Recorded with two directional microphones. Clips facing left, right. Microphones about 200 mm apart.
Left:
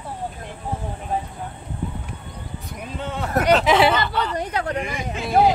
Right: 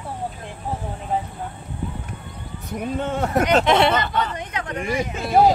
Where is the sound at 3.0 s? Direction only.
50° right (ahead or behind).